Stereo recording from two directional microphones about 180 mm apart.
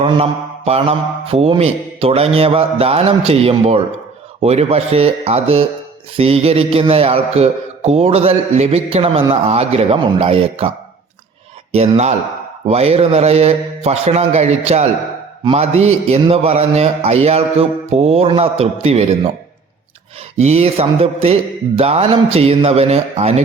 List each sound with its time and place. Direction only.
0.0 s a man's voice: 30° right (ahead or behind)
11.7 s a man's voice: 35° right (ahead or behind)
20.3 s a man's voice: 35° right (ahead or behind)